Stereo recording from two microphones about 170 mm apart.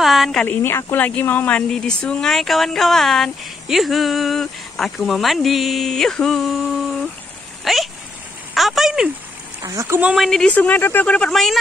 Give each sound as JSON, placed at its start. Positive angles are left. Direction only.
{"t": 0.0, "sound": "speech", "side_deg": 0}
{"t": 8.5, "sound": "a sound", "side_deg": 0}
{"t": 9.6, "sound": "speech", "side_deg": -20}
{"t": 10.1, "sound": "speech", "side_deg": 0}